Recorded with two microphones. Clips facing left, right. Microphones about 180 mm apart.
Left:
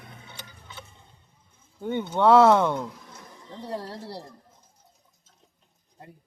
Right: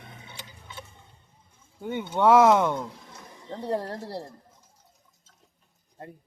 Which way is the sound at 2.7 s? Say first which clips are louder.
Left 1 dB; 20° left (ahead or behind).